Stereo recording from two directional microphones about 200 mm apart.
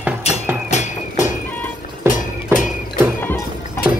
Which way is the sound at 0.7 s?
35° left (ahead or behind).